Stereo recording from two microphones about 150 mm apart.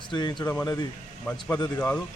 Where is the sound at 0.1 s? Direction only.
30° left (ahead or behind).